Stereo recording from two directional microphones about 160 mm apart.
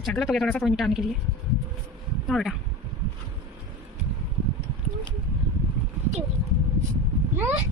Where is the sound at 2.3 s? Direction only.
Centre (ahead or behind).